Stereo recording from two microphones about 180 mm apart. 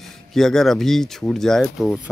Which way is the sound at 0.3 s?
Centre (ahead or behind).